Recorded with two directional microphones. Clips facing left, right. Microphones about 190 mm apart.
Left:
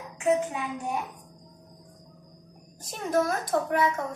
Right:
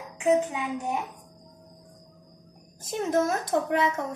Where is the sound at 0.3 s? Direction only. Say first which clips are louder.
Right 2 dB; 20° right (ahead or behind).